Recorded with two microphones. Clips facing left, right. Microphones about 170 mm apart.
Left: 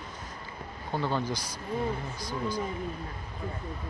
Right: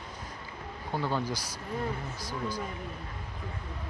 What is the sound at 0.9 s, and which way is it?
Speech, 10° right (ahead or behind).